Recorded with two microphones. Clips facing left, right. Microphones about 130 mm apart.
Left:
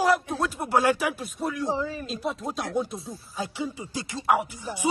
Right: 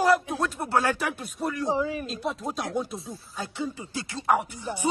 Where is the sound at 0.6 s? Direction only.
10° left (ahead or behind).